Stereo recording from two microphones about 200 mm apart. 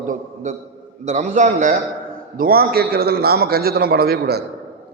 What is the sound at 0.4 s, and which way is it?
A man's voice, 35° right (ahead or behind).